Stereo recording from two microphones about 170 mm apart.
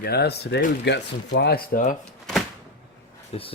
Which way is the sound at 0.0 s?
70° left (ahead or behind).